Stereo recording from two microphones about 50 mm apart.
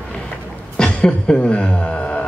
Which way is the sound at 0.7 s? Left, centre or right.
Centre.